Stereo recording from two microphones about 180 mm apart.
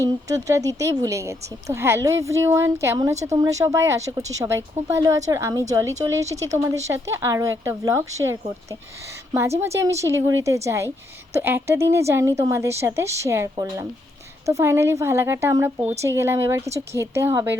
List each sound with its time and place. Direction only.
0.0 s speech: 20° right (ahead or behind)